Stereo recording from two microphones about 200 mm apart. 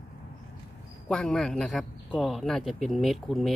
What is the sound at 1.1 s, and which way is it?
A man's voice, 5° left (ahead or behind).